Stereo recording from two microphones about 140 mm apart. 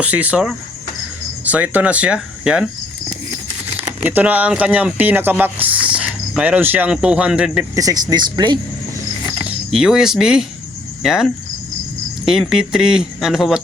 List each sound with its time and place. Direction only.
0.0 s speech: 10° right (ahead or behind)
4.0 s speech: 10° right (ahead or behind)
7.8 s speech: 25° right (ahead or behind)
9.5 s speech: 5° right (ahead or behind)
11.0 s cricket: 5° right (ahead or behind)
12.2 s speech: 5° right (ahead or behind)